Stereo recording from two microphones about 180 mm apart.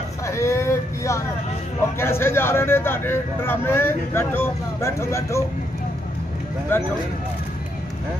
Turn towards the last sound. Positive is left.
turn(degrees=10)  # may be behind; listen again after turning